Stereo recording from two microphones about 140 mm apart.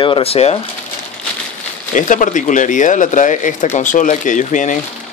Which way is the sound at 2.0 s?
65° left (ahead or behind).